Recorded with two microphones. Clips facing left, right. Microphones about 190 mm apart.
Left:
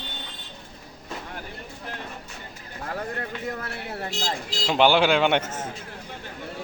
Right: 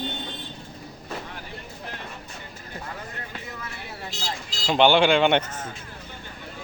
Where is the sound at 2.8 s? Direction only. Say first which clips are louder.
Left 10 dB; 55° left (ahead or behind).